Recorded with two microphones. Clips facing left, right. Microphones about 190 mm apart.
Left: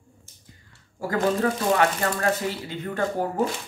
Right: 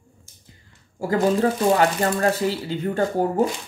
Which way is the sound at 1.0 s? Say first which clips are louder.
Right 4 dB; 30° right (ahead or behind).